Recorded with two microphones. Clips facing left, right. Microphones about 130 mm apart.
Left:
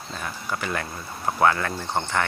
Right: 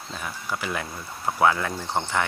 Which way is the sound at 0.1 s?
5° right (ahead or behind).